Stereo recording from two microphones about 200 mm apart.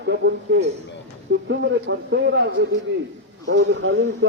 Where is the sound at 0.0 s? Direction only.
60° right (ahead or behind).